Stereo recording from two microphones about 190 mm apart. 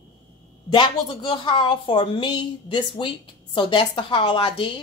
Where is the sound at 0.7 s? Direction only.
25° left (ahead or behind).